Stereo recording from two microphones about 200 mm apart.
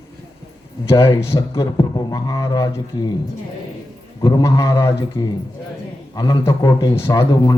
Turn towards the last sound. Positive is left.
turn(degrees=20)  # may be behind; listen again after turning